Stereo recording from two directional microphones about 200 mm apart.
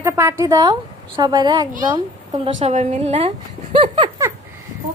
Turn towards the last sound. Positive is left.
turn(degrees=-30)  # may be behind; listen again after turning